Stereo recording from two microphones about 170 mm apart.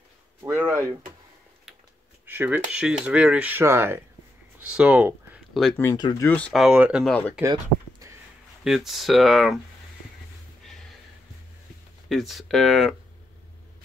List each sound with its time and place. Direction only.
0.4 s a sound: 15° right (ahead or behind)
2.2 s speech: 10° right (ahead or behind)
5.9 s speech: 25° left (ahead or behind)
6.2 s speech: 10° left (ahead or behind)
7.1 s speech: 10° left (ahead or behind)
8.6 s speech: centre (ahead or behind)
12.1 s speech: centre (ahead or behind)